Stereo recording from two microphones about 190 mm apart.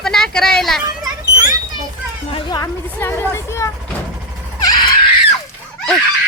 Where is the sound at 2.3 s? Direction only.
20° left (ahead or behind).